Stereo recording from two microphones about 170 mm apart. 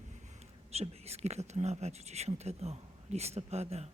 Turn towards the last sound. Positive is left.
turn(degrees=-40)  # may be behind; listen again after turning